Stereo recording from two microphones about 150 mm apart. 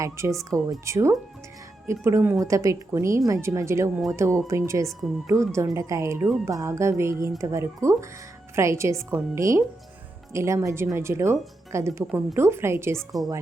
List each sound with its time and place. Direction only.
0.0 s speech: 20° right (ahead or behind)